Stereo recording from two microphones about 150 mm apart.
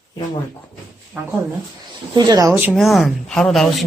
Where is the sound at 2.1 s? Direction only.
25° right (ahead or behind).